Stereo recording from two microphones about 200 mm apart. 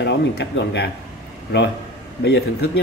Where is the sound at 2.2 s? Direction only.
60° left (ahead or behind).